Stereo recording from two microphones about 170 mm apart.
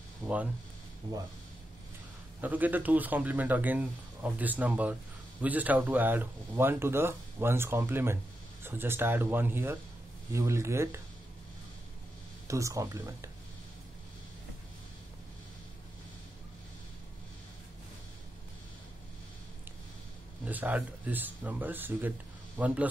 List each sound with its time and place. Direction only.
0.2 s speech: 10° right (ahead or behind)
2.4 s speech: 10° right (ahead or behind)
12.4 s speech: 20° right (ahead or behind)
20.4 s speech: 10° right (ahead or behind)